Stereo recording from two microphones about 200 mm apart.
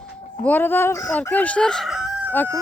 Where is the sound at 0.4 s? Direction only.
10° left (ahead or behind).